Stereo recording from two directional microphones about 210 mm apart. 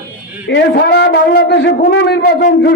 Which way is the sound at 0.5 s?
55° left (ahead or behind).